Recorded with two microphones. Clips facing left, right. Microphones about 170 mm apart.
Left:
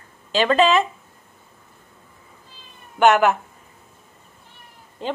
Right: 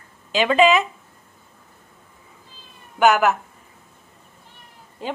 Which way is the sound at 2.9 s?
5° right (ahead or behind).